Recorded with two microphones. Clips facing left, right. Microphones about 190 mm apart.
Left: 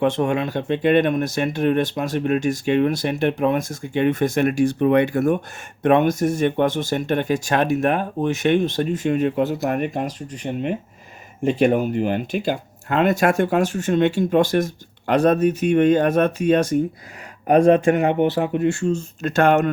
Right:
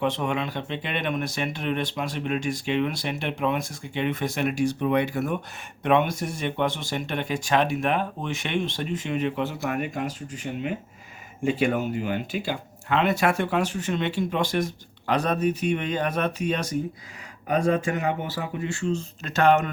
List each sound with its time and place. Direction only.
0.0 s speech: 50° left (ahead or behind)
11.9 s speech: 50° left (ahead or behind)
17.4 s speech: 60° left (ahead or behind)